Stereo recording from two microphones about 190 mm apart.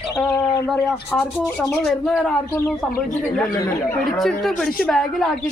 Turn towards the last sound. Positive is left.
turn(degrees=5)  # may be behind; listen again after turning